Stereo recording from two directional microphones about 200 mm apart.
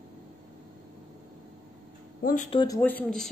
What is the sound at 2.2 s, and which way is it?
Speech, 40° left (ahead or behind).